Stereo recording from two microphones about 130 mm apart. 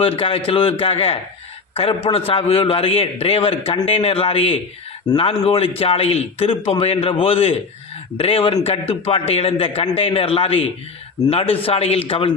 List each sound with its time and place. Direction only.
0.0 s a man's voice: 45° left (ahead or behind)